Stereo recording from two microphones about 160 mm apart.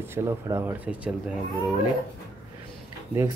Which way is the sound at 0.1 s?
15° right (ahead or behind).